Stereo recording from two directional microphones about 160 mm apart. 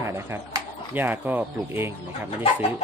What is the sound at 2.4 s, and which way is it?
Speech, 40° left (ahead or behind).